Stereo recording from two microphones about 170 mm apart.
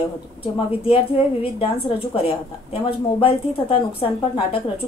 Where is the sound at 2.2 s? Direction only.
35° left (ahead or behind).